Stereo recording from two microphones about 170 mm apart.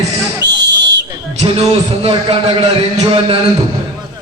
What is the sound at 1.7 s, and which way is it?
Speech, 35° right (ahead or behind).